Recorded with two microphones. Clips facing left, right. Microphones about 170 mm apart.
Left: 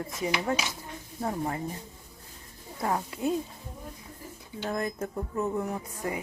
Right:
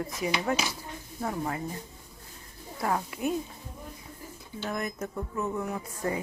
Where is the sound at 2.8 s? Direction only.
25° left (ahead or behind).